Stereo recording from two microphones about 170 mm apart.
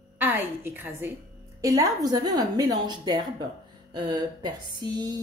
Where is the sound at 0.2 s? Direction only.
10° right (ahead or behind).